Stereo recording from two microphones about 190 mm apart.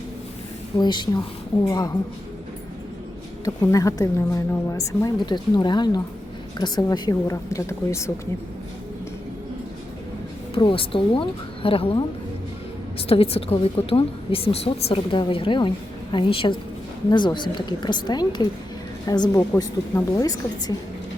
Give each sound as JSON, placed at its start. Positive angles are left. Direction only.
{"t": 0.8, "sound": "a woman's voice", "side_deg": 25}
{"t": 3.4, "sound": "a woman's voice", "side_deg": 20}
{"t": 10.5, "sound": "a woman's voice", "side_deg": 30}